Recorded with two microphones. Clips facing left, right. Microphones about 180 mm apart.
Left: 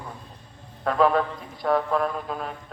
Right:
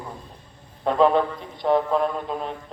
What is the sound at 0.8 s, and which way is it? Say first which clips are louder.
A man's voice: right 2 dB; 25° right (ahead or behind).